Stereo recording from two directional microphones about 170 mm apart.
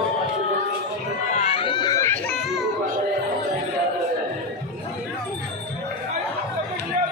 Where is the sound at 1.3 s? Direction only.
35° left (ahead or behind); by 2.5 s 10° left (ahead or behind).